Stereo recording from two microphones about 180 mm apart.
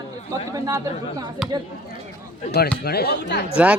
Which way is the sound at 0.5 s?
20° right (ahead or behind).